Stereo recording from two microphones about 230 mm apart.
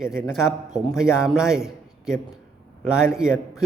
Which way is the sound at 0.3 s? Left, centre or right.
Centre.